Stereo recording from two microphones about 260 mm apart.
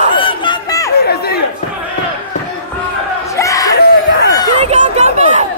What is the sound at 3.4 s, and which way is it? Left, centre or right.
Yell, centre.